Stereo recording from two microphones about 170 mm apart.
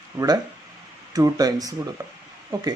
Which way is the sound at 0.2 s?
15° right (ahead or behind).